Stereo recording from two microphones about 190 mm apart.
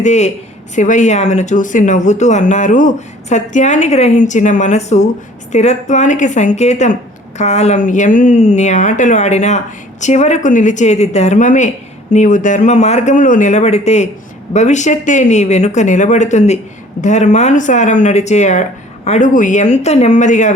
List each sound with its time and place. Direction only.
0.0 s speech: 35° left (ahead or behind)